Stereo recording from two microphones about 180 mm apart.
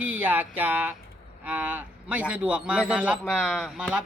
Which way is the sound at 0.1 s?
10° right (ahead or behind).